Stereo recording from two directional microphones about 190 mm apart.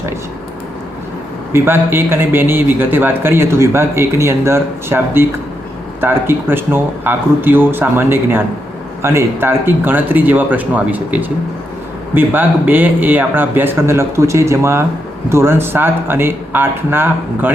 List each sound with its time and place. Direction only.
1.5 s speech: 10° right (ahead or behind)